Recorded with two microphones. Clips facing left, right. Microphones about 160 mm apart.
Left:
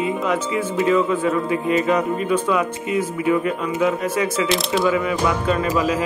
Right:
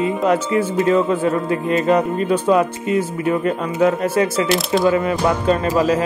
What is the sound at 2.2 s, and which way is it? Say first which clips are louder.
Speech: right 4 dB; 35° right (ahead or behind).